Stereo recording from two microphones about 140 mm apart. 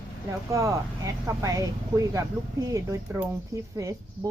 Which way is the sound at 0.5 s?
25° right (ahead or behind).